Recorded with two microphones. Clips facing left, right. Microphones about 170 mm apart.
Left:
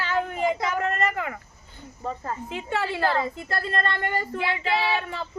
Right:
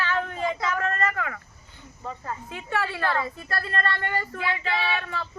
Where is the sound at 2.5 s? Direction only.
25° left (ahead or behind).